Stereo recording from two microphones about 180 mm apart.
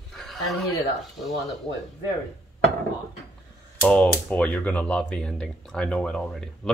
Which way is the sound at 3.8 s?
5° left (ahead or behind).